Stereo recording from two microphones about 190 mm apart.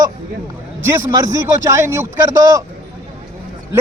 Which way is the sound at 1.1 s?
20° right (ahead or behind).